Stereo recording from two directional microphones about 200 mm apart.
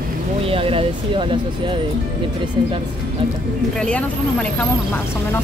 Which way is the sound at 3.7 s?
5° left (ahead or behind).